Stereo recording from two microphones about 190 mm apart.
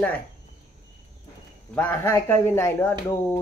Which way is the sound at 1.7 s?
15° left (ahead or behind).